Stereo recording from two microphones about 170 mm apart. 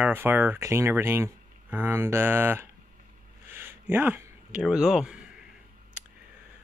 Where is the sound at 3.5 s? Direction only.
10° right (ahead or behind).